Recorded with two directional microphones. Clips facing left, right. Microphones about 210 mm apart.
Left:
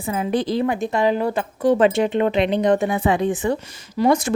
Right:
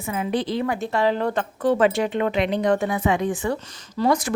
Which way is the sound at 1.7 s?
20° left (ahead or behind).